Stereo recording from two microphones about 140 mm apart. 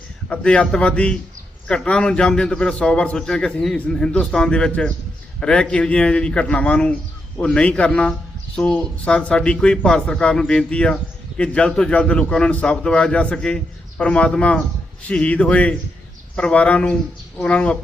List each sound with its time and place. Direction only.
0.3 s a man's voice: 5° left (ahead or behind)